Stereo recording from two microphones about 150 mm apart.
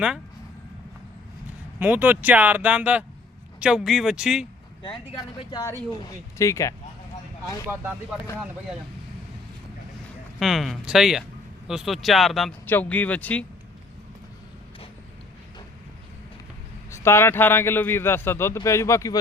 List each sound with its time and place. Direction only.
1.8 s speech: 10° right (ahead or behind)
5.4 s speech: 30° left (ahead or behind)
10.4 s speech: centre (ahead or behind)
12.6 s a man's voice: 10° left (ahead or behind)
16.9 s a man's voice: 15° left (ahead or behind)